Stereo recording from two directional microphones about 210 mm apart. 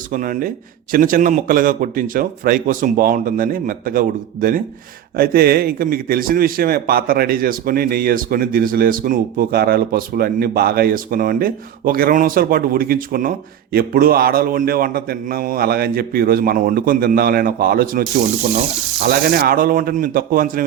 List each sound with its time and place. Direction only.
0.1 s a man's voice: 40° right (ahead or behind)
19.0 s a man's voice: 45° right (ahead or behind)